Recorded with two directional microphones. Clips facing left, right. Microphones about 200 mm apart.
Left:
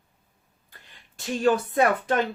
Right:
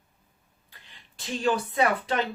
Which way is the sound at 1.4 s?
50° left (ahead or behind).